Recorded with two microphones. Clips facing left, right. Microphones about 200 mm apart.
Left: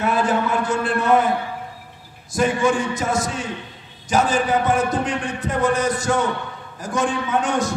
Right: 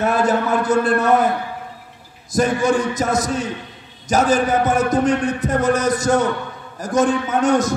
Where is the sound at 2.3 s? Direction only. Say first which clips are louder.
Right 2 dB; 40° right (ahead or behind).